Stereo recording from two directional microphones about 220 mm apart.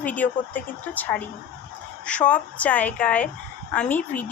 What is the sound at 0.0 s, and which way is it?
Speech, 5° left (ahead or behind).